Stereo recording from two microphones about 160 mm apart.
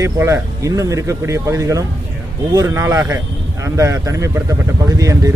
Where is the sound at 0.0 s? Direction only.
20° right (ahead or behind).